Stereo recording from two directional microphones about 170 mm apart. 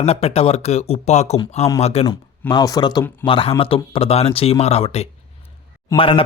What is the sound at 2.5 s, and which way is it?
Speech, 25° left (ahead or behind).